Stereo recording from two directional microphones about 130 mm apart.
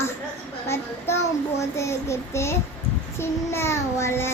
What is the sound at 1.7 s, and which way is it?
Child singing, 20° left (ahead or behind).